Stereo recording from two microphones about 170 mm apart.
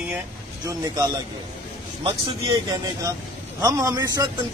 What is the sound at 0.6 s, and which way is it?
A man's voice, 20° right (ahead or behind).